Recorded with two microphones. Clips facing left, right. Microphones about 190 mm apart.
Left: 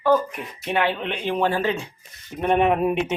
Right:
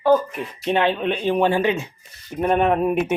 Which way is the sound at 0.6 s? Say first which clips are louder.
Right 3 dB; 25° right (ahead or behind).